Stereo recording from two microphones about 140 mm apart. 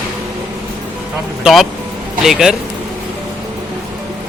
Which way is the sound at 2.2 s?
5° right (ahead or behind).